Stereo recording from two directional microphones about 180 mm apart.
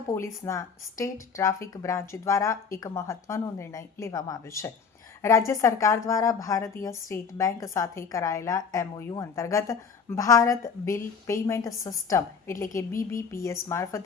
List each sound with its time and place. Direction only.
0.1 s speech: 15° left (ahead or behind)